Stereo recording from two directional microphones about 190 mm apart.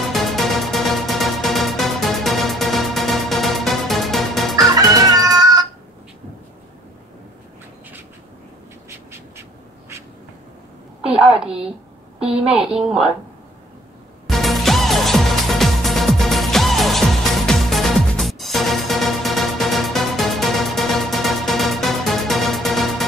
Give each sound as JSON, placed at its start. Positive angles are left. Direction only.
{"t": 0.1, "sound": "music", "side_deg": 0}
{"t": 4.7, "sound": "chicken", "side_deg": -20}
{"t": 5.4, "sound": "a sound", "side_deg": -20}
{"t": 11.1, "sound": "a sound", "side_deg": -5}
{"t": 12.2, "sound": "a woman's voice", "side_deg": -5}
{"t": 14.2, "sound": "music", "side_deg": 0}